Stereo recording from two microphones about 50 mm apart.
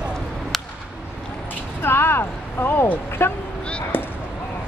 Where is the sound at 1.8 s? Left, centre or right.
Left.